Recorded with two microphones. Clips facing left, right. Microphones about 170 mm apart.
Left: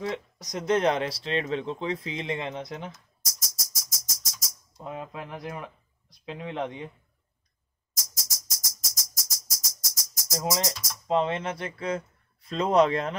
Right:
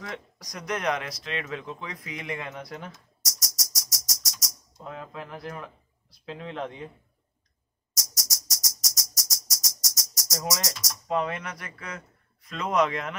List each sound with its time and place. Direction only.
0.0 s speech: 25° left (ahead or behind)
3.2 s music: 75° right (ahead or behind)
4.8 s speech: 20° left (ahead or behind)
8.0 s music: 80° right
11.1 s speech: 25° left (ahead or behind)